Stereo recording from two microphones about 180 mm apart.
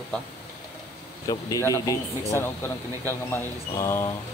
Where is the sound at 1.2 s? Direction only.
20° left (ahead or behind).